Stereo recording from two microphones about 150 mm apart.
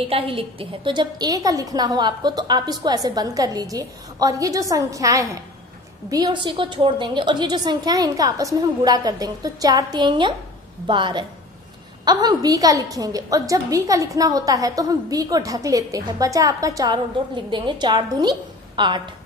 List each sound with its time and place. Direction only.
0.1 s a woman's voice: 35° right (ahead or behind)